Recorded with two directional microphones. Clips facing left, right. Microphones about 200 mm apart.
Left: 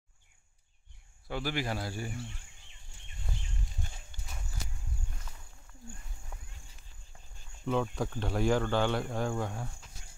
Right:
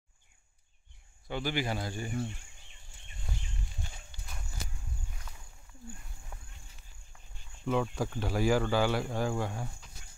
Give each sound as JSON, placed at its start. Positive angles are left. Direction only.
{"t": 1.2, "sound": "speech", "side_deg": 0}
{"t": 4.1, "sound": "horse", "side_deg": 50}
{"t": 6.3, "sound": "walk", "side_deg": 0}
{"t": 7.6, "sound": "speech", "side_deg": 0}